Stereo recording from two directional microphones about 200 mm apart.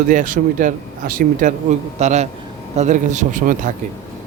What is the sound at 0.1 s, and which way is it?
A man's voice, 40° right (ahead or behind).